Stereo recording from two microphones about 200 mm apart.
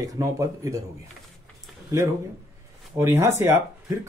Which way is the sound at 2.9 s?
15° right (ahead or behind).